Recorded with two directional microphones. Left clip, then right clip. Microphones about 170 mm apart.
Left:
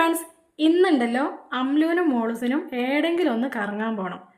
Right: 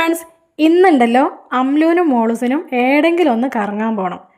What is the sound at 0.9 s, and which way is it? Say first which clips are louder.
A woman's voice: right 11 dB; 40° right (ahead or behind).